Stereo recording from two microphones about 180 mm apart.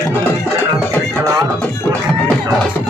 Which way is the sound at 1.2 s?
15° right (ahead or behind).